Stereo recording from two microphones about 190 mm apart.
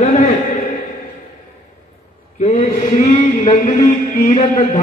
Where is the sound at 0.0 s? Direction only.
40° left (ahead or behind).